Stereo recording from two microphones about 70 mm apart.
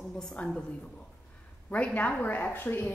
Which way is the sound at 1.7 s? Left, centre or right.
Centre.